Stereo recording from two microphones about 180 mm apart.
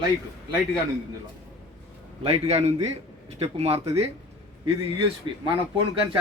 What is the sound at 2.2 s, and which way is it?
Speech, 30° right (ahead or behind).